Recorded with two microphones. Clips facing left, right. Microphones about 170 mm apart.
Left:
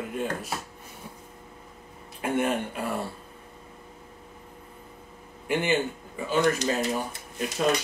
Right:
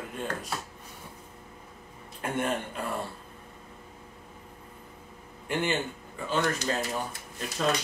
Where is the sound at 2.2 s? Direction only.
5° left (ahead or behind).